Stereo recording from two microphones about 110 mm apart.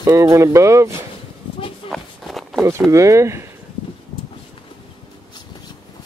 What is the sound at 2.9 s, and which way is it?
Speech, 30° right (ahead or behind).